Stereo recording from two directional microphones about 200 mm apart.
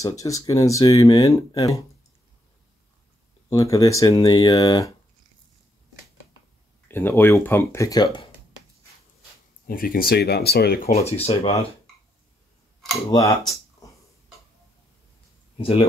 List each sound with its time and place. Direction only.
0.0 s speech: 15° left (ahead or behind)
3.4 s speech: 15° left (ahead or behind)
6.9 s speech: 10° left (ahead or behind)
9.7 s speech: 45° left (ahead or behind)
11.1 s speech: 30° left (ahead or behind)
13.1 s speech: 20° left (ahead or behind)
15.5 s speech: 30° left (ahead or behind)